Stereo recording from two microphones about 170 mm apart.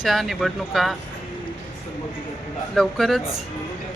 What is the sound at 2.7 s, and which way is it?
Speech, centre (ahead or behind).